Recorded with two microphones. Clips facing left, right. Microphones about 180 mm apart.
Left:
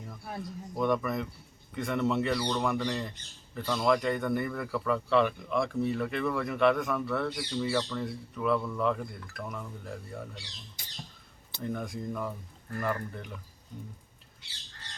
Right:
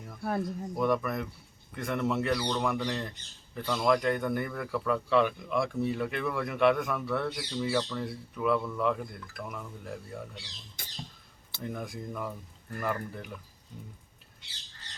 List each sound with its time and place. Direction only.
0.2 s a man's voice: 60° right (ahead or behind)
0.4 s a man's voice: centre (ahead or behind)
10.8 s rodents: 50° right (ahead or behind)
11.6 s a man's voice: 5° right (ahead or behind)